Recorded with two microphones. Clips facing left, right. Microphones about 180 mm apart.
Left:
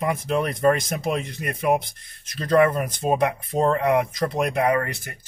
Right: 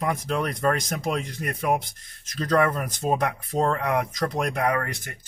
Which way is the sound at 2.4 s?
5° left (ahead or behind).